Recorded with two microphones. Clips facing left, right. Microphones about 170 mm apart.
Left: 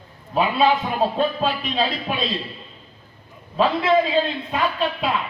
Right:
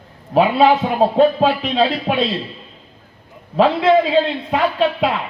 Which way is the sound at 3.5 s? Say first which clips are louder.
Right 5 dB; 70° right (ahead or behind).